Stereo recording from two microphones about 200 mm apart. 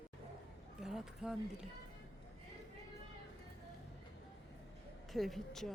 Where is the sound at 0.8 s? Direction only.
5° right (ahead or behind).